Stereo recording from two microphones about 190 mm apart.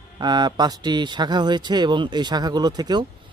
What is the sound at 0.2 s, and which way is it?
A man's voice, 20° right (ahead or behind).